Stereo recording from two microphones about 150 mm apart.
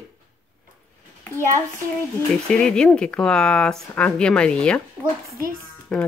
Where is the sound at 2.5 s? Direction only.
5° left (ahead or behind).